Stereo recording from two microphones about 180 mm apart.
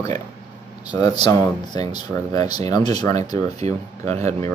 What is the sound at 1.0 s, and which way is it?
Speech, 20° left (ahead or behind).